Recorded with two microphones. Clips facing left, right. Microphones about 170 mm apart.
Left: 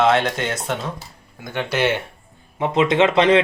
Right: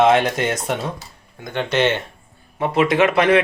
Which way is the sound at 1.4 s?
5° left (ahead or behind).